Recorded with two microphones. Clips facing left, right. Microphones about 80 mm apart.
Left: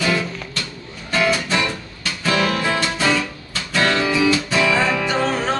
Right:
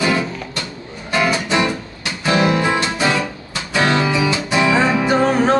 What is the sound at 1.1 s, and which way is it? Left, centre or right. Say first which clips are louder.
Music: right 2 dB; centre.